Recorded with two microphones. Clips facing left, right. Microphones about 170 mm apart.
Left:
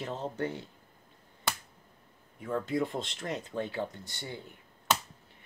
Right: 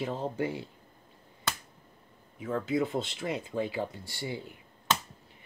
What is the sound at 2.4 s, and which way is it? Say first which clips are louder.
Speech: right 2 dB; centre (ahead or behind).